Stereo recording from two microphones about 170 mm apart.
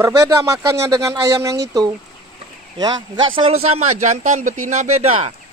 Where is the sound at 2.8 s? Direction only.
25° right (ahead or behind).